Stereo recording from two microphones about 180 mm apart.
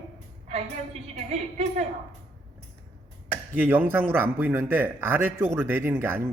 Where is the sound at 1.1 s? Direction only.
40° right (ahead or behind).